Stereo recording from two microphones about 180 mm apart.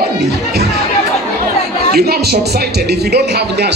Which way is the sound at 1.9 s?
60° right (ahead or behind).